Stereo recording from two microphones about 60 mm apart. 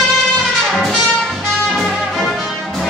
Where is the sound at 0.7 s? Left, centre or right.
Centre.